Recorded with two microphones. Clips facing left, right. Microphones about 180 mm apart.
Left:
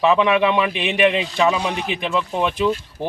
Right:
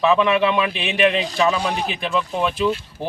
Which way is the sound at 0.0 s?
15° left (ahead or behind).